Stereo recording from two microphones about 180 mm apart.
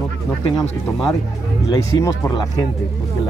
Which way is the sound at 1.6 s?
20° left (ahead or behind).